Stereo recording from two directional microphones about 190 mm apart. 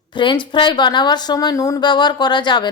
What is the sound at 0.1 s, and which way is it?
A woman's voice, 25° left (ahead or behind).